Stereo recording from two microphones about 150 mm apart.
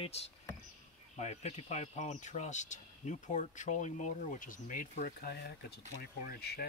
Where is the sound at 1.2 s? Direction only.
50° left (ahead or behind); by 6.6 s 90° left.